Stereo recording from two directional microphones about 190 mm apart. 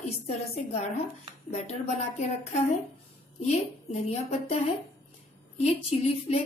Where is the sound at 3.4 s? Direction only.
35° left (ahead or behind).